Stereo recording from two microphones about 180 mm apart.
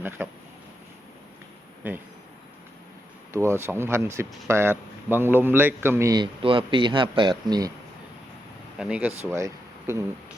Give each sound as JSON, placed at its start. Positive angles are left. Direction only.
{"t": 0.2, "sound": "speech", "side_deg": -10}
{"t": 1.8, "sound": "speech", "side_deg": -10}
{"t": 3.3, "sound": "speech", "side_deg": -15}
{"t": 6.4, "sound": "speech", "side_deg": -30}
{"t": 8.8, "sound": "speech", "side_deg": -10}